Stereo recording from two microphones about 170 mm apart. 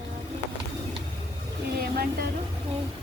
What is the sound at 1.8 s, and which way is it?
Speech, 65° right (ahead or behind).